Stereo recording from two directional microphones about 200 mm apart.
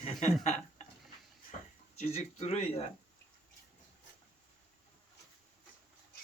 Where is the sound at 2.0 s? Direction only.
35° left (ahead or behind).